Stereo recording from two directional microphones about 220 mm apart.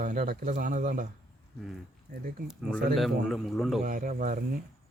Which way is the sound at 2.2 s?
40° right (ahead or behind).